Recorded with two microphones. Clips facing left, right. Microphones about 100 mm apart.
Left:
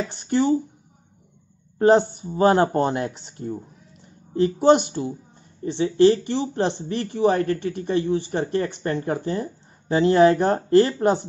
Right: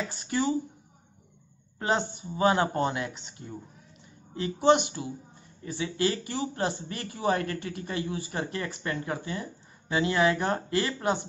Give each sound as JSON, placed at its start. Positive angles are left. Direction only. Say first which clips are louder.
{"t": 0.3, "sound": "speech", "louder": "left 8 dB", "side_deg": 30}
{"t": 1.8, "sound": "speech", "louder": "left 12 dB", "side_deg": 40}
{"t": 5.6, "sound": "speech", "louder": "left 12 dB", "side_deg": 30}